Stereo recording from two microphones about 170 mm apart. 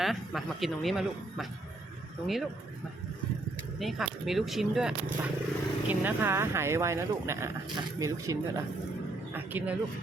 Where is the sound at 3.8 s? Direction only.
Centre (ahead or behind).